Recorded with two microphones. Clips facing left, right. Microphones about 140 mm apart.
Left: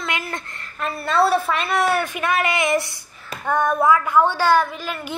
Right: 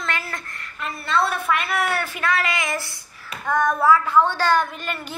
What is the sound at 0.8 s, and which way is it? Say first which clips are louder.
A woman's voice: left 4 dB; 40° left (ahead or behind).